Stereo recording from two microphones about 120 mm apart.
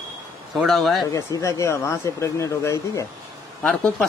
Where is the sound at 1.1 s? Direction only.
25° left (ahead or behind).